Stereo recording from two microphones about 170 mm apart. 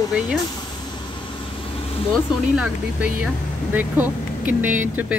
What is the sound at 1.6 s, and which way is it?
Vehicle, 30° left (ahead or behind).